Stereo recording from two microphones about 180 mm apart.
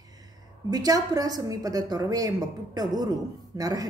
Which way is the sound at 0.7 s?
20° right (ahead or behind).